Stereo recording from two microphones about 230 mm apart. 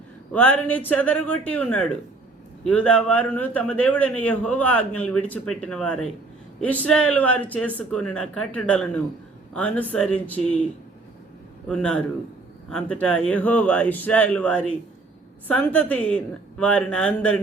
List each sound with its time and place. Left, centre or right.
0.3 s speech: centre
11.7 s speech: centre